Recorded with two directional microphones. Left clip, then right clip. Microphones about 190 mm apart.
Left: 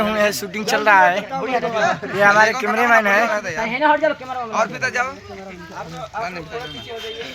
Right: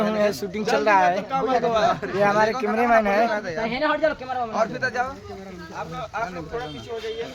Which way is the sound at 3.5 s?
50° left (ahead or behind).